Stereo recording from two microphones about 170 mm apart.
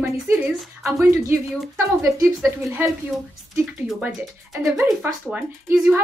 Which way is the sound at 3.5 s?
5° right (ahead or behind).